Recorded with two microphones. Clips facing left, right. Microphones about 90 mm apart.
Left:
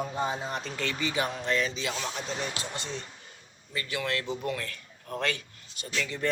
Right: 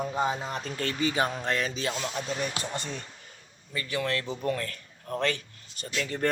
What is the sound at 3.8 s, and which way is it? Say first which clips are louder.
Speech: right 2 dB; 40° right (ahead or behind).